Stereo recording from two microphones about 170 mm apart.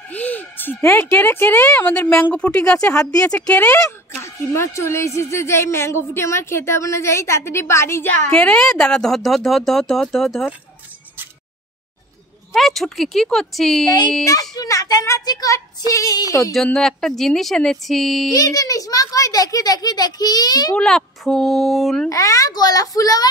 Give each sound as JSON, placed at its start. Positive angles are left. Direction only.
{"t": 0.1, "sound": "a child's voice", "side_deg": 10}
{"t": 3.3, "sound": "a woman's voice", "side_deg": 5}
{"t": 12.5, "sound": "speech", "side_deg": 0}
{"t": 14.2, "sound": "a child's voice", "side_deg": 20}
{"t": 16.5, "sound": "speech", "side_deg": 0}
{"t": 18.3, "sound": "a child's voice", "side_deg": 20}
{"t": 20.7, "sound": "speech", "side_deg": 5}
{"t": 22.1, "sound": "a child's voice", "side_deg": 20}